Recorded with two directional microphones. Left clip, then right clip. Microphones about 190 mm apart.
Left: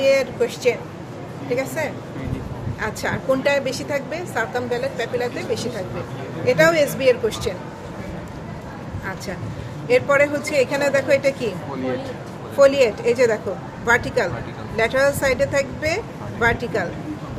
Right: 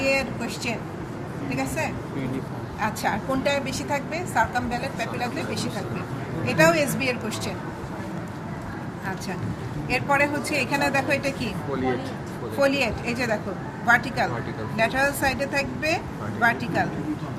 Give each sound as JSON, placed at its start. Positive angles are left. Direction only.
{"t": 0.0, "sound": "a woman's voice", "side_deg": 45}
{"t": 9.9, "sound": "a woman's voice", "side_deg": 50}
{"t": 12.5, "sound": "a woman's voice", "side_deg": 50}